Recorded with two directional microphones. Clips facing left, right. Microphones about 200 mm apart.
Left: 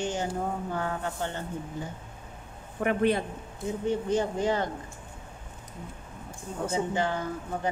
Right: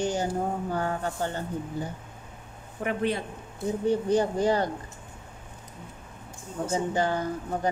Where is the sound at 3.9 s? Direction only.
35° right (ahead or behind).